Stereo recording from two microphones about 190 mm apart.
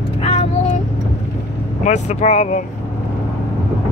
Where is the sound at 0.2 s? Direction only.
35° left (ahead or behind).